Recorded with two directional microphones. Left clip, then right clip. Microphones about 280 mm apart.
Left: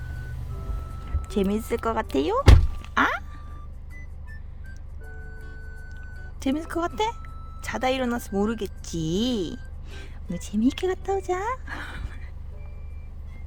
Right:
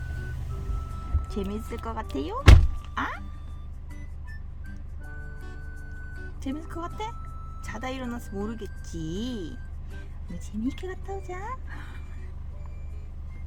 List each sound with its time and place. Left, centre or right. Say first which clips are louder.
1.3 s speech: left 9 dB; left
2.8 s a sound: left 9 dB; left
6.4 s speech: left 9 dB; left